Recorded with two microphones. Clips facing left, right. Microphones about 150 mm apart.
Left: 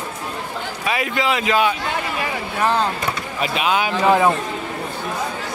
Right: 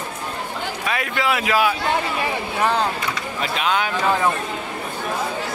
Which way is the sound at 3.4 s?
10° left (ahead or behind).